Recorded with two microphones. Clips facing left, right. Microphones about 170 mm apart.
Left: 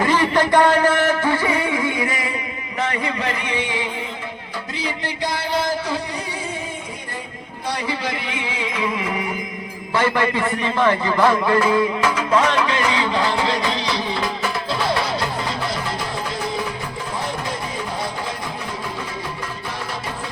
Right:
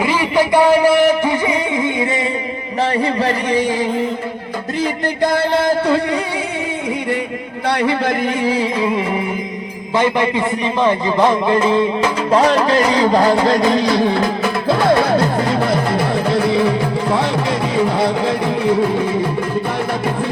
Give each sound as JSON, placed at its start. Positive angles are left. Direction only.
{"t": 0.0, "sound": "music", "side_deg": -10}
{"t": 2.8, "sound": "speech", "side_deg": -35}
{"t": 4.8, "sound": "music", "side_deg": -50}
{"t": 7.7, "sound": "music", "side_deg": -60}
{"t": 9.9, "sound": "a man's voice", "side_deg": -20}
{"t": 17.8, "sound": "music", "side_deg": -70}